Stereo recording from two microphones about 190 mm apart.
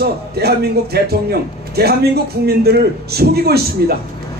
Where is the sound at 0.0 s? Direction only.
55° right (ahead or behind).